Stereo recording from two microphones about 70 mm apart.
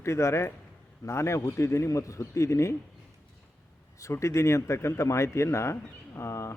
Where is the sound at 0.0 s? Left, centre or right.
Left.